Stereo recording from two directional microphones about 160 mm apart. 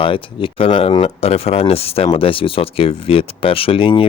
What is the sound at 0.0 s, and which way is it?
Speech, 30° left (ahead or behind).